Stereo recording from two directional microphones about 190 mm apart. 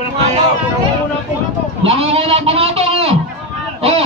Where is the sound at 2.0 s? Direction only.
30° right (ahead or behind).